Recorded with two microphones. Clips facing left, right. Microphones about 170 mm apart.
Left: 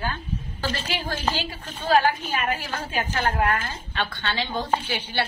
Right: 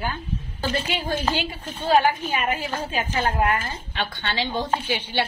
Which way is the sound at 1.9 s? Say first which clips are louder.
Right 1 dB; 20° right (ahead or behind).